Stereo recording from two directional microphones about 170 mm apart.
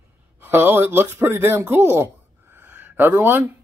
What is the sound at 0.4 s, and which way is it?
Speech, 15° right (ahead or behind).